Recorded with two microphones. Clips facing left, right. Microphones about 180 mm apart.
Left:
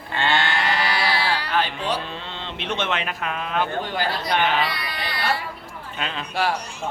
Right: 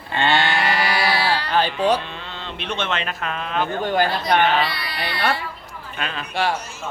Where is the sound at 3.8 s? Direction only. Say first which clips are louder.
Right 6 dB; 50° right (ahead or behind).